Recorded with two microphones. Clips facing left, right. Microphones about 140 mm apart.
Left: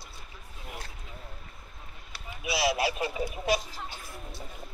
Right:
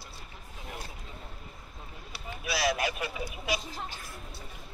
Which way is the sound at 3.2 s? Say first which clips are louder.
Left 7 dB; 45° left (ahead or behind).